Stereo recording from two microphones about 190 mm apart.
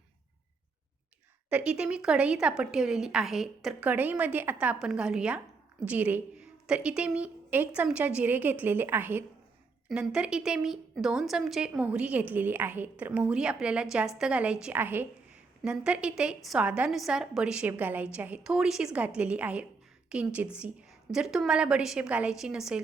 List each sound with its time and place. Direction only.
1.5 s a woman's voice: 5° right (ahead or behind)